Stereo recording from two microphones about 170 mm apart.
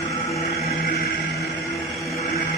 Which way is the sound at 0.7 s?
60° left (ahead or behind).